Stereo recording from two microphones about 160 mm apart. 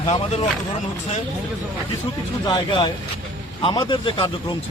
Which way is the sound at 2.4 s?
30° left (ahead or behind).